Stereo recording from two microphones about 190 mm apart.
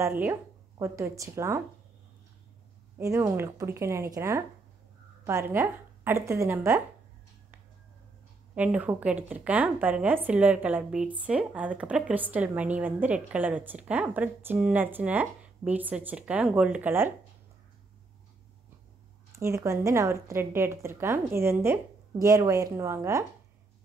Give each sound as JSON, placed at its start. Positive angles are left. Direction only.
{"t": 0.2, "sound": "speech", "side_deg": -15}
{"t": 3.0, "sound": "a woman's voice", "side_deg": -15}
{"t": 8.5, "sound": "a woman's voice", "side_deg": -10}
{"t": 19.3, "sound": "a woman's voice", "side_deg": -15}